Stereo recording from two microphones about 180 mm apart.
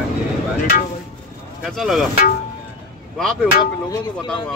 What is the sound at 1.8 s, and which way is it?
Speech, centre (ahead or behind).